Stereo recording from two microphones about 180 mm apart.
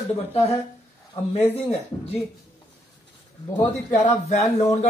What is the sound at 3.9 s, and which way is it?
Speech, 40° left (ahead or behind).